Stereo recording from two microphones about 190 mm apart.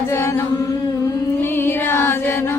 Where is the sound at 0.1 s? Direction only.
15° left (ahead or behind).